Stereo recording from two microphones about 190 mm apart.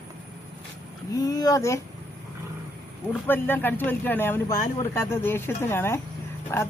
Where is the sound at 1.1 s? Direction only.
20° left (ahead or behind).